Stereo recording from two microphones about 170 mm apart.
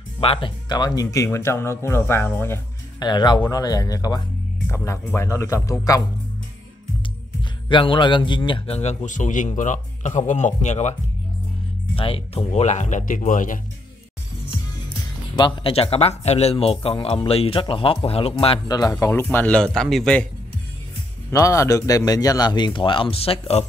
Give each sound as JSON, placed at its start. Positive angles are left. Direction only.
{"t": 0.2, "sound": "speech", "side_deg": 30}
{"t": 3.1, "sound": "a man's voice", "side_deg": 25}
{"t": 7.6, "sound": "a man's voice", "side_deg": 30}
{"t": 15.3, "sound": "a man's voice", "side_deg": 30}
{"t": 18.7, "sound": "a man's voice", "side_deg": 20}
{"t": 21.3, "sound": "a man's voice", "side_deg": 20}